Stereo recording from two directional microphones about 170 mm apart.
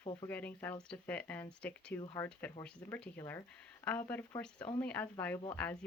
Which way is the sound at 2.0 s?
25° left (ahead or behind).